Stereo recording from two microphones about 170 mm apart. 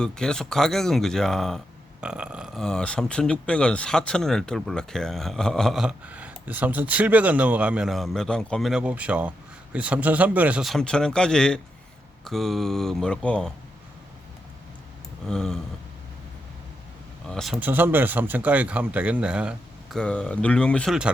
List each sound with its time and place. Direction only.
0.0 s speech: 5° left (ahead or behind)
15.3 s speech: 5° left (ahead or behind)
17.2 s speech: centre (ahead or behind)
17.7 s speech: 10° right (ahead or behind)
20.0 s speech: 5° left (ahead or behind)